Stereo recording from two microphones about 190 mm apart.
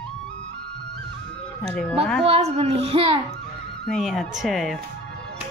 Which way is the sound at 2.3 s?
35° right (ahead or behind).